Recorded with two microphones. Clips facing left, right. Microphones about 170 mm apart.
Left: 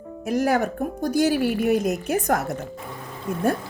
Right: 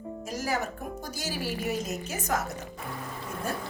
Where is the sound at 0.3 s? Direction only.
60° left (ahead or behind).